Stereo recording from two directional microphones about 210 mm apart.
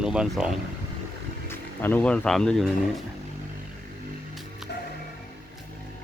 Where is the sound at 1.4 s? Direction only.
10° left (ahead or behind).